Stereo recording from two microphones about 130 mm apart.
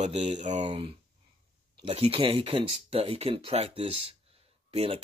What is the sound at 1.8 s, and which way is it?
Speech, 45° right (ahead or behind).